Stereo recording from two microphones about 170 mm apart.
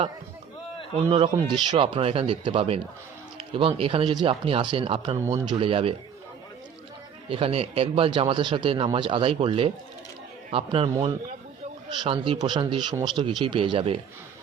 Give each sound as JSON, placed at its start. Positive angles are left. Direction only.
{"t": 0.9, "sound": "speech", "side_deg": -35}
{"t": 7.3, "sound": "speech", "side_deg": -30}
{"t": 12.0, "sound": "speech", "side_deg": -30}